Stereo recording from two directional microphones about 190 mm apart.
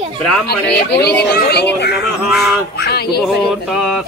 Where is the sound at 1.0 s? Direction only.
60° left (ahead or behind).